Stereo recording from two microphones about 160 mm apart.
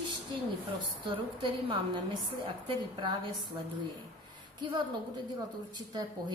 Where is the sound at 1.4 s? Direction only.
30° right (ahead or behind).